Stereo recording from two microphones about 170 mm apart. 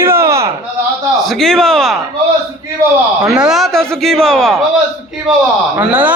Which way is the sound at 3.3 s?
5° right (ahead or behind).